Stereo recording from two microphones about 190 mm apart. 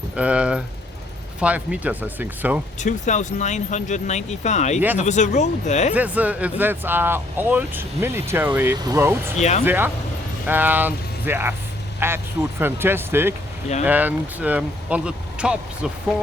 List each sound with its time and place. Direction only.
0.2 s speech: 5° right (ahead or behind)
2.8 s speech: 40° left (ahead or behind)
5.9 s speech: 10° right (ahead or behind)
9.4 s speech: 35° left (ahead or behind)
9.6 s speech: 10° right (ahead or behind)